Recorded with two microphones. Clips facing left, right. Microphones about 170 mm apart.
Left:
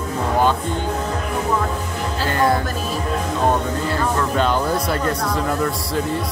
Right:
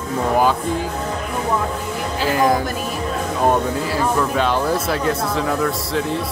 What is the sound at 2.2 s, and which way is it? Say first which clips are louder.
Speech: right 2 dB; 15° right (ahead or behind).